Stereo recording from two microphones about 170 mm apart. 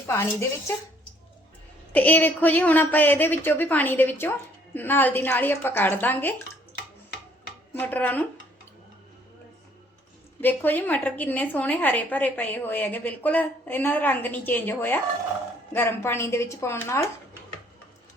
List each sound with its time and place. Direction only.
0.1 s a woman's voice: 15° left (ahead or behind)
1.9 s a woman's voice: 10° left (ahead or behind)
7.7 s speech: 10° left (ahead or behind)
10.4 s a woman's voice: 10° left (ahead or behind)